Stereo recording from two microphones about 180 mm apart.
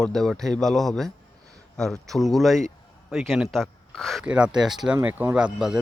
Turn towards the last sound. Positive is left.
turn(degrees=-5)  # may be behind; listen again after turning